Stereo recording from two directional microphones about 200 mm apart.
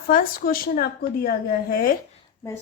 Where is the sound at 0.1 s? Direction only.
45° left (ahead or behind).